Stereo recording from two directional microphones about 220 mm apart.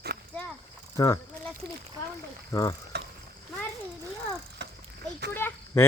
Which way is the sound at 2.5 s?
15° left (ahead or behind).